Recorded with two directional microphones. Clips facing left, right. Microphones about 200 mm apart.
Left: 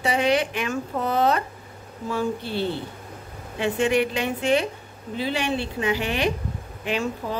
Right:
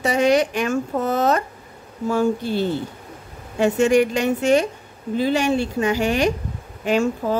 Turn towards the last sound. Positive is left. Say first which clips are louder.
# right 7 dB
turn(degrees=-45)  # may be behind; listen again after turning